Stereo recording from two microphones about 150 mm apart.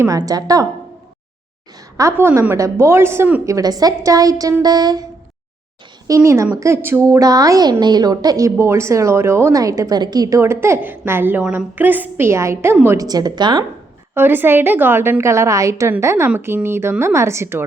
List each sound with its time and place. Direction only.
0.0 s a woman's voice: 25° right (ahead or behind)
2.0 s a woman's voice: 20° right (ahead or behind)
6.1 s a woman's voice: 20° right (ahead or behind)
14.1 s a woman's voice: 15° right (ahead or behind)